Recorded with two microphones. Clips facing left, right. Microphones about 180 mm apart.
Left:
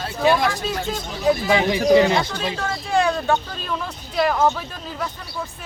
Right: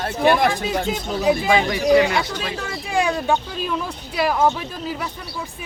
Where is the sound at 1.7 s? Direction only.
20° left (ahead or behind).